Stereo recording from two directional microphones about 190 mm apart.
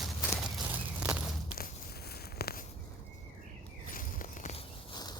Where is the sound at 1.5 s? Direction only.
55° left (ahead or behind).